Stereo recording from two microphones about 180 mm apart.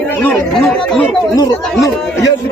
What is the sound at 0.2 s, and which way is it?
Speech, 10° left (ahead or behind).